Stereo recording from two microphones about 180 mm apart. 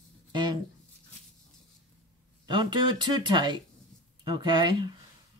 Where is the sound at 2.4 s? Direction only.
25° right (ahead or behind).